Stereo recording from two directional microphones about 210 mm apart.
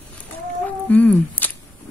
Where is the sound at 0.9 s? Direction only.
5° left (ahead or behind).